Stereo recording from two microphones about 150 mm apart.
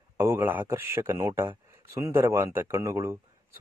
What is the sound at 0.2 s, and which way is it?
Speech, 15° right (ahead or behind).